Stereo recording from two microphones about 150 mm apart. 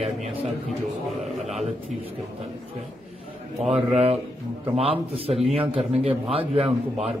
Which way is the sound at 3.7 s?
45° right (ahead or behind).